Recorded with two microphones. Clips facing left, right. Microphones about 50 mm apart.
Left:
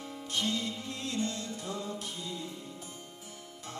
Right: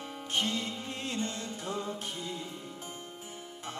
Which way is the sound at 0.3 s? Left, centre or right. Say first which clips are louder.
Right 1 dB; right.